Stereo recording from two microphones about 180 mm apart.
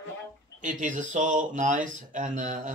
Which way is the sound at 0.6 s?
45° right (ahead or behind).